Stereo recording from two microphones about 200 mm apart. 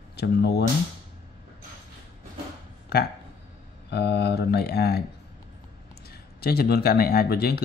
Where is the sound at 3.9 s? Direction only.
55° left (ahead or behind).